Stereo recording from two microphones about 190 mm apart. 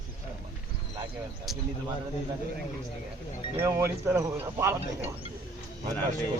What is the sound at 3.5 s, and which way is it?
Speech, 15° right (ahead or behind).